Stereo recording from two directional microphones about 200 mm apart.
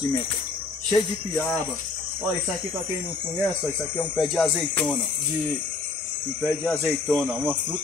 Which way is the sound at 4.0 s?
Centre (ahead or behind).